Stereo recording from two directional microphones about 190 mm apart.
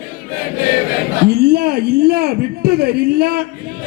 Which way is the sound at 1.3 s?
55° right (ahead or behind).